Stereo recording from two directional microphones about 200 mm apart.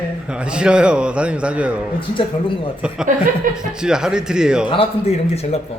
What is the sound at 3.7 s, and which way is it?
Speech, 5° right (ahead or behind).